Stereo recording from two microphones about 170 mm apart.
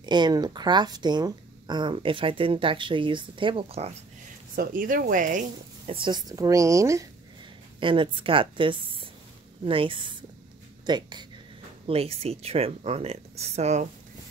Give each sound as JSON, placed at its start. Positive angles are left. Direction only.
{"t": 0.0, "sound": "speech", "side_deg": -25}
{"t": 4.6, "sound": "speech", "side_deg": -55}
{"t": 5.9, "sound": "speech", "side_deg": -25}
{"t": 7.8, "sound": "speech", "side_deg": -30}
{"t": 11.9, "sound": "speech", "side_deg": -35}